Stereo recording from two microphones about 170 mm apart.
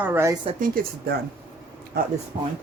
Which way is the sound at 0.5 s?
55° right (ahead or behind).